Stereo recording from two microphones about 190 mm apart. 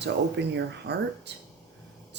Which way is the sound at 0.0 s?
65° right (ahead or behind).